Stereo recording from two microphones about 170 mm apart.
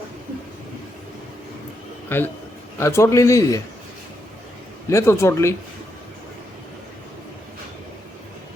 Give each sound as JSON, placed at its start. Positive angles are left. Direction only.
{"t": 2.0, "sound": "a man's voice", "side_deg": 15}
{"t": 4.9, "sound": "a man's voice", "side_deg": 15}